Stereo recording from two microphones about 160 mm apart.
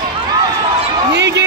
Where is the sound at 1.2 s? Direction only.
90° right.